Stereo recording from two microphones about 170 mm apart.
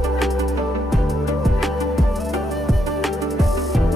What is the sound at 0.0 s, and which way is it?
Music, centre (ahead or behind).